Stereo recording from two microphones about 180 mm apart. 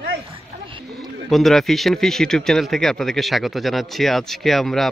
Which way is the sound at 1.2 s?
Centre (ahead or behind).